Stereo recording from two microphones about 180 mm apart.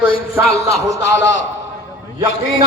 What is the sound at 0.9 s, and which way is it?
Speech, 75° left (ahead or behind).